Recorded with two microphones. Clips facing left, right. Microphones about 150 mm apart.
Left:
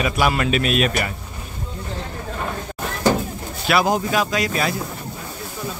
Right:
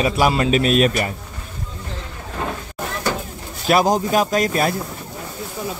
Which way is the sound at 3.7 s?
45° right (ahead or behind).